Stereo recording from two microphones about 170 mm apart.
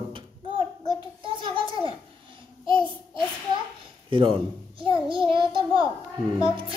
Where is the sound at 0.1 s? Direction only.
30° right (ahead or behind).